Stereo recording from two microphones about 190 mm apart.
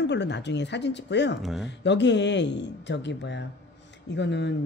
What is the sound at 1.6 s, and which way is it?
Speech, 65° left (ahead or behind).